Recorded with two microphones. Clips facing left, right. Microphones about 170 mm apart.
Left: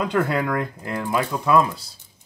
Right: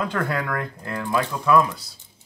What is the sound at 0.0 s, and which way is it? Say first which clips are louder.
Speech: left 4 dB; 20° left (ahead or behind).